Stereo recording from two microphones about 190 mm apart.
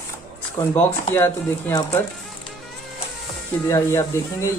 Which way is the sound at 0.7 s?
10° left (ahead or behind).